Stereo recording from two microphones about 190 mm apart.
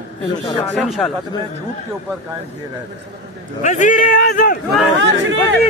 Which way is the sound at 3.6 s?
40° left (ahead or behind).